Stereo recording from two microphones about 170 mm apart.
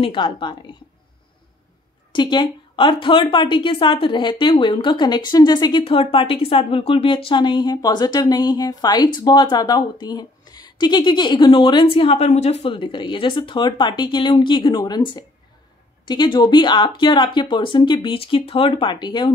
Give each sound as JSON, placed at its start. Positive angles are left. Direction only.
{"t": 0.0, "sound": "a woman's voice", "side_deg": 30}
{"t": 2.1, "sound": "a woman's voice", "side_deg": 25}